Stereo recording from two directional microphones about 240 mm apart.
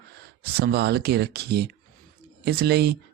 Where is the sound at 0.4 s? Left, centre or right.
Right.